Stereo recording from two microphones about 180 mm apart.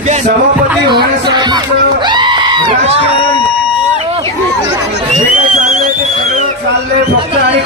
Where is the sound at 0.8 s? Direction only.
25° right (ahead or behind).